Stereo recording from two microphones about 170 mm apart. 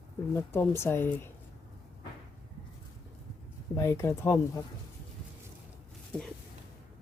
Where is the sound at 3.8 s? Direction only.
15° left (ahead or behind).